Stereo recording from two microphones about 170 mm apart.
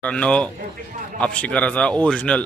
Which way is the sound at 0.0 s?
5° left (ahead or behind).